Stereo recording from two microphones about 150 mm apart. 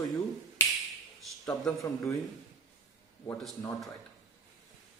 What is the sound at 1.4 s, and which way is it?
Speech, 25° left (ahead or behind).